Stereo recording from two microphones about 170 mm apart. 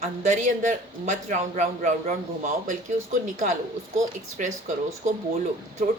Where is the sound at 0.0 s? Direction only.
45° right (ahead or behind).